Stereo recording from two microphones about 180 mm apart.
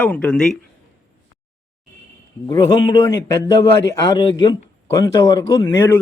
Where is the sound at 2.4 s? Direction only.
20° left (ahead or behind).